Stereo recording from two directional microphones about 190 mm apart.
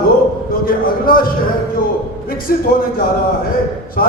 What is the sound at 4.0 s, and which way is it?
Speech, 50° left (ahead or behind).